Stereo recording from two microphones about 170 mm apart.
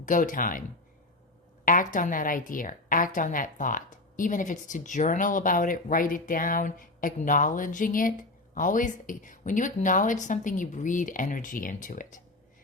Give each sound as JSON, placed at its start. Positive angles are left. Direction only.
{"t": 0.0, "sound": "a woman's voice", "side_deg": 50}
{"t": 1.6, "sound": "a woman's voice", "side_deg": 50}